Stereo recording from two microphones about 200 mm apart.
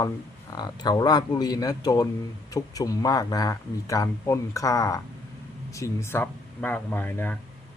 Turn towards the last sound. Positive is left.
turn(degrees=10)  # may be behind; listen again after turning